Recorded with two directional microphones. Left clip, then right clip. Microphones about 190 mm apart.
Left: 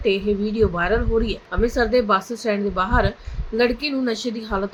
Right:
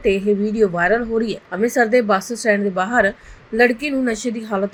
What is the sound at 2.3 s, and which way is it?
Speech, 10° right (ahead or behind).